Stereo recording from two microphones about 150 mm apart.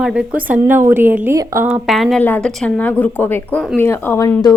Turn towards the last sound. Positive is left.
turn(degrees=25)  # may be behind; listen again after turning